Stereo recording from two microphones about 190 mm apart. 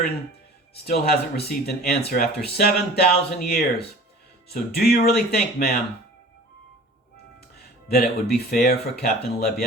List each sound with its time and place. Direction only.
0.7 s speech: 55° left (ahead or behind)
7.9 s speech: 55° left (ahead or behind)